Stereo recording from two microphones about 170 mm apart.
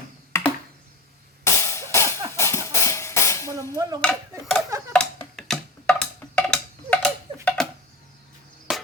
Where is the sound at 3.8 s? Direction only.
20° right (ahead or behind).